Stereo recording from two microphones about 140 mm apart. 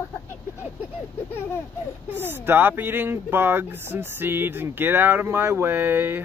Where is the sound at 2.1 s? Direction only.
15° right (ahead or behind).